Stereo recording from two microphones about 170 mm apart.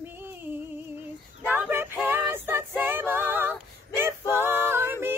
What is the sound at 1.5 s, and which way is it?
Music, 10° right (ahead or behind).